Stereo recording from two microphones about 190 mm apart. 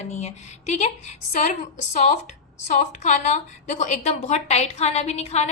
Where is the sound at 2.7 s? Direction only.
40° left (ahead or behind).